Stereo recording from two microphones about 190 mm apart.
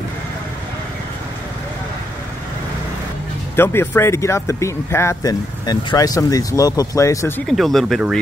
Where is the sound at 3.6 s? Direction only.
15° left (ahead or behind).